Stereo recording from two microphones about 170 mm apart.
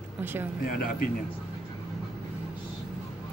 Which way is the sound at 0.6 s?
55° left (ahead or behind).